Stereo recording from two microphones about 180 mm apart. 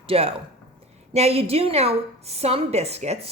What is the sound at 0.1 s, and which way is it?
Speech, 35° right (ahead or behind).